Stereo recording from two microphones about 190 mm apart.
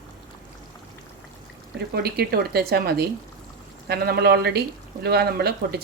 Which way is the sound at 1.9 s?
55° right (ahead or behind).